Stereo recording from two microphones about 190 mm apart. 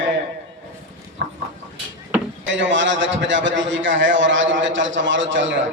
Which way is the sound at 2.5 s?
75° right (ahead or behind).